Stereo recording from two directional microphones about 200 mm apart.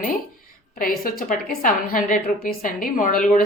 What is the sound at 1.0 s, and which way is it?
A woman's voice, 45° left (ahead or behind).